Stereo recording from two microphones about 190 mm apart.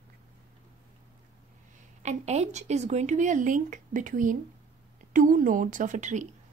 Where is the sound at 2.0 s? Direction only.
35° right (ahead or behind).